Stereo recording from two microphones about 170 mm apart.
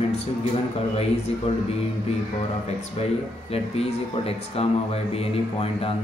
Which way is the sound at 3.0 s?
35° left (ahead or behind).